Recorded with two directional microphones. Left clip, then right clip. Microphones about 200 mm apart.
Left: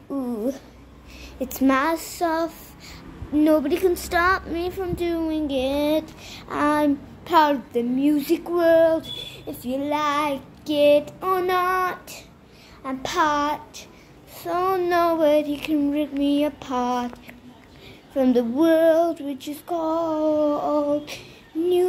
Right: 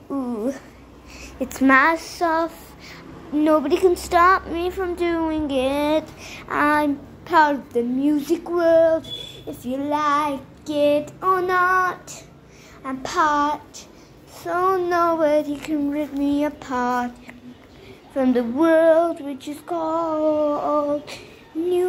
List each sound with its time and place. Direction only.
0.3 s a sound: 10° left (ahead or behind)
1.4 s speech: 10° left (ahead or behind)
14.4 s child singing: 15° left (ahead or behind)
19.4 s speech: 15° left (ahead or behind)